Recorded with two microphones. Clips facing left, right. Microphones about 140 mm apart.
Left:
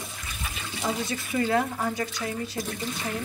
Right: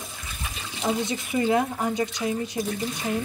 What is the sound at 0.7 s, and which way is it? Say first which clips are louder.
Speech: right 3 dB; 20° right (ahead or behind).